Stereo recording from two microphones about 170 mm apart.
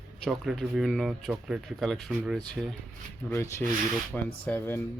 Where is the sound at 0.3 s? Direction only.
Centre (ahead or behind).